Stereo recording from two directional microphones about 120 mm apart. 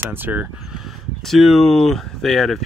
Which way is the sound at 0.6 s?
5° right (ahead or behind).